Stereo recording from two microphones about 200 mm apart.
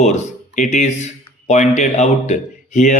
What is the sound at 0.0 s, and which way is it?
A man's voice, 35° left (ahead or behind).